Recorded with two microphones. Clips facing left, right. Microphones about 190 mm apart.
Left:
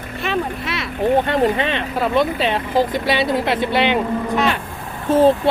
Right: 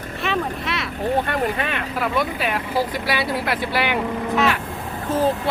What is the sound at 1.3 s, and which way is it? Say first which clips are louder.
Speech: left 6 dB; 25° left (ahead or behind).